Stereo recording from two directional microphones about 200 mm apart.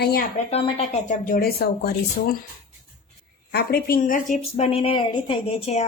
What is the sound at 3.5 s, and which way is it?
Speech, 50° left (ahead or behind).